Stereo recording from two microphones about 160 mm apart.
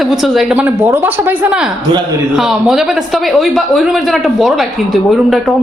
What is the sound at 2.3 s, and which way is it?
Speech, 5° right (ahead or behind).